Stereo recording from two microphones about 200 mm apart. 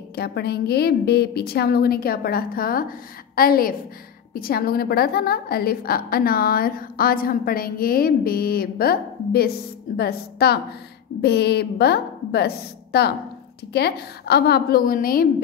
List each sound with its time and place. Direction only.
0.1 s a woman's voice: 55° left (ahead or behind)